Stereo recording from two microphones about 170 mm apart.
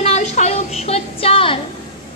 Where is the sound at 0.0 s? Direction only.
40° left (ahead or behind).